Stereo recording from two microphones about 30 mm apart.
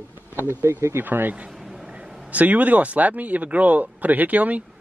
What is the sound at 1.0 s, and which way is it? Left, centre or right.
Speech, right.